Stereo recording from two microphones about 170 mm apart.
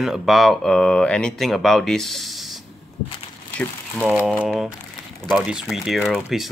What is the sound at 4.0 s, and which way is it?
Speech, 5° right (ahead or behind).